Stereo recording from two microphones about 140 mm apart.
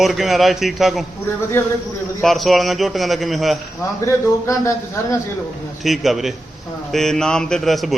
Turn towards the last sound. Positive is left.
turn(degrees=0)  # may be behind; listen again after turning